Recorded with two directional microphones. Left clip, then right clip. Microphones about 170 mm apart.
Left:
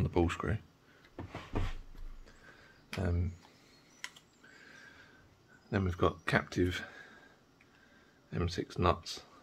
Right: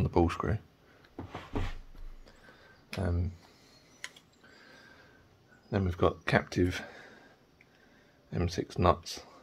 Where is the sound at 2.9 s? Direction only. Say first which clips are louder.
Right 2 dB; 15° right (ahead or behind).